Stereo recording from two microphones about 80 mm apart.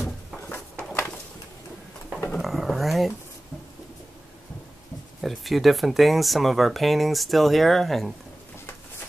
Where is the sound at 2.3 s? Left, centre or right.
Centre.